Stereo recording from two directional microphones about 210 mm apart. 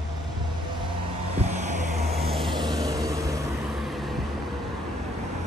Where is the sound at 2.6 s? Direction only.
20° right (ahead or behind).